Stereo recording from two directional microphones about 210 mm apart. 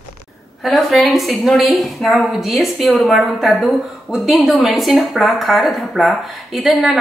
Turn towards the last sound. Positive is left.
turn(degrees=0)  # may be behind; listen again after turning